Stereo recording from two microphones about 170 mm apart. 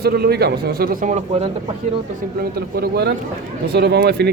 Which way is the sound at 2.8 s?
75° right (ahead or behind).